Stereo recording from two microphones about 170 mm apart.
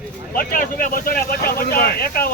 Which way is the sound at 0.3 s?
55° left (ahead or behind).